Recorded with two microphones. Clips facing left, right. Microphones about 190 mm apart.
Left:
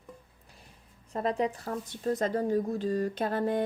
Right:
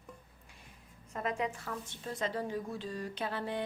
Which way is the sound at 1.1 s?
35° left (ahead or behind).